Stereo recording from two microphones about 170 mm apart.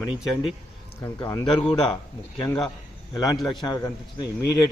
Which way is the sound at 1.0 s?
20° left (ahead or behind).